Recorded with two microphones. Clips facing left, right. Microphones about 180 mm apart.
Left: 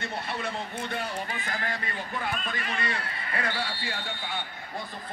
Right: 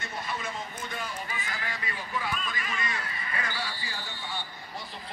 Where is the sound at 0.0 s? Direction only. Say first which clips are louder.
Left 3 dB; 60° left (ahead or behind).